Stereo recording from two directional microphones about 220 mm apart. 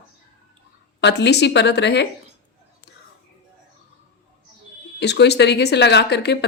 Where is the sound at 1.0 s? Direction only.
50° left (ahead or behind).